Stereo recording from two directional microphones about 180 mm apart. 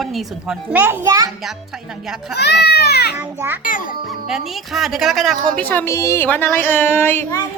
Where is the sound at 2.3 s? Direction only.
65° left (ahead or behind).